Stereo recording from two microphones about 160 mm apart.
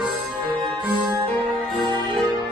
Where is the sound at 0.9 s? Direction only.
30° right (ahead or behind).